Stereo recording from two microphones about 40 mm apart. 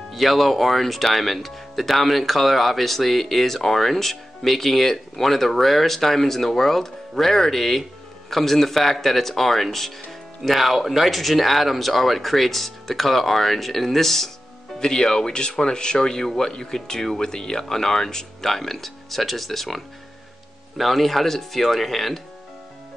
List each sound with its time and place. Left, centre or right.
0.1 s speech: centre